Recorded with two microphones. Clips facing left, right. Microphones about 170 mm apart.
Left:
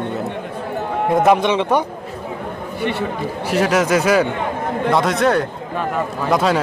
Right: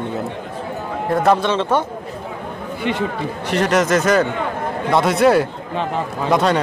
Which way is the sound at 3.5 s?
5° left (ahead or behind).